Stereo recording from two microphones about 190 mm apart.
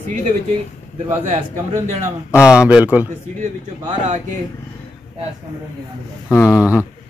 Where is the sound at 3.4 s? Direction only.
40° right (ahead or behind).